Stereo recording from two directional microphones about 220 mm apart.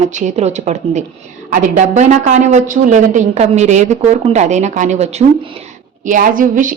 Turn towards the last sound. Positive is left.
turn(degrees=-35)  # may be behind; listen again after turning